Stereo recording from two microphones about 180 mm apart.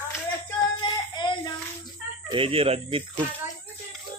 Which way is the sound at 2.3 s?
30° right (ahead or behind).